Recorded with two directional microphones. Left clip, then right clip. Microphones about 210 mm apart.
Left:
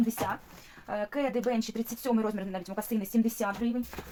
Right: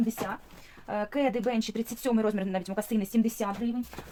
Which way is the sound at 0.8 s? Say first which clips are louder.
Right 3 dB; 40° right (ahead or behind).